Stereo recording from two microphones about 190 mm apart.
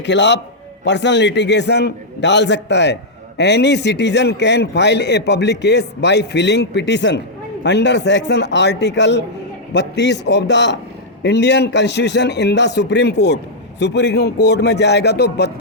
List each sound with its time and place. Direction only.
0.0 s a man's voice: 65° left (ahead or behind)